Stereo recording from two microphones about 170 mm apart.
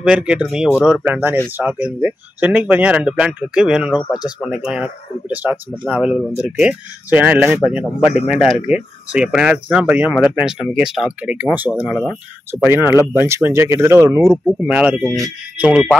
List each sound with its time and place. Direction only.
0.0 s speech: 5° right (ahead or behind)
8.0 s speech: 35° left (ahead or behind)
8.3 s speech: 5° right (ahead or behind)